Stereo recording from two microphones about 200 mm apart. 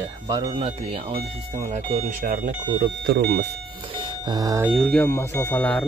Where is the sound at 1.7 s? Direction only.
40° right (ahead or behind).